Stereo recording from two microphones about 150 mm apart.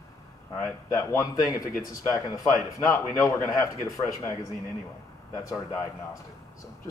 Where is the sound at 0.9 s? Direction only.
20° left (ahead or behind).